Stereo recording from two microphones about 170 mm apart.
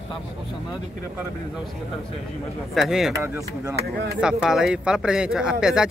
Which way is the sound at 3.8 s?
65° right (ahead or behind).